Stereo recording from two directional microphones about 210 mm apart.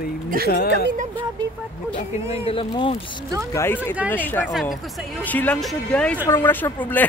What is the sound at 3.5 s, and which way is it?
Speech, 15° left (ahead or behind).